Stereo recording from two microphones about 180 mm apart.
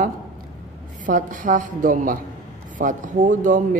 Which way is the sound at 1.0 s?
45° right (ahead or behind).